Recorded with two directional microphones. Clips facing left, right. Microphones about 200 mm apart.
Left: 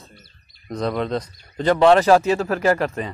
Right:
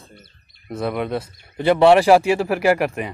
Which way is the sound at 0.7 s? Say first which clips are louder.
Even; 5° right (ahead or behind).